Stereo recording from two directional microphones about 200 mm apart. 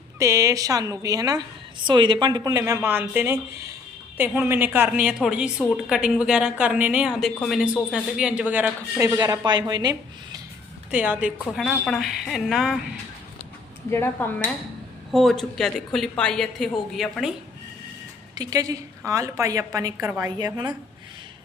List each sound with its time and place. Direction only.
0.2 s a woman's voice: 15° right (ahead or behind)
10.9 s a woman's voice: 5° right (ahead or behind)
11.4 s a woman's voice: 5° left (ahead or behind)
13.9 s a woman's voice: 10° left (ahead or behind)
18.3 s a woman's voice: 15° right (ahead or behind)